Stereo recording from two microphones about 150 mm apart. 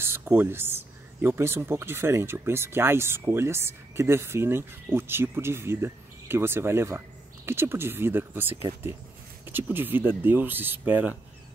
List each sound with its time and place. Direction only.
0.0 s speech: 15° right (ahead or behind)